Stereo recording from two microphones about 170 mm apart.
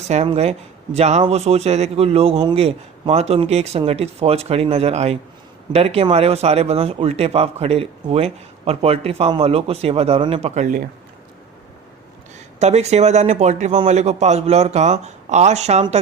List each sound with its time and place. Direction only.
0.1 s speech: 40° right (ahead or behind)
12.5 s speech: 40° right (ahead or behind)